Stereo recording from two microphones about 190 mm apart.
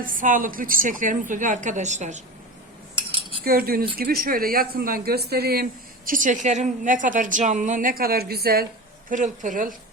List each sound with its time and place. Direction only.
0.0 s a woman's voice: 45° right (ahead or behind)
3.4 s a woman's voice: 50° right (ahead or behind)
6.1 s a woman's voice: 45° right (ahead or behind)
9.0 s a woman's voice: 40° right (ahead or behind)